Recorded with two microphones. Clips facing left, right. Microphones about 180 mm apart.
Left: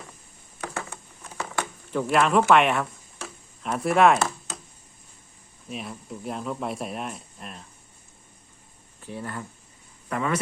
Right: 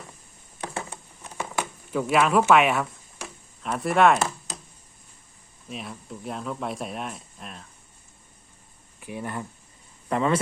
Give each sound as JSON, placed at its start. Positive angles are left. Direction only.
{"t": 0.6, "sound": "a sound", "side_deg": -25}
{"t": 1.9, "sound": "speech", "side_deg": -5}
{"t": 5.6, "sound": "speech", "side_deg": 0}
{"t": 9.0, "sound": "speech", "side_deg": -15}
{"t": 10.1, "sound": "speech", "side_deg": -30}